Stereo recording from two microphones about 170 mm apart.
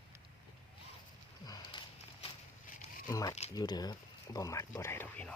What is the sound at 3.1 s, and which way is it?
Speech, 20° left (ahead or behind).